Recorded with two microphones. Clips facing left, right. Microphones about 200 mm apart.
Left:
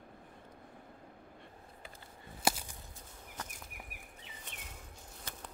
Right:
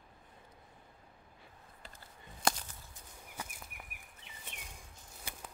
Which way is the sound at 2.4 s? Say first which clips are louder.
Left 1 dB; 10° left (ahead or behind).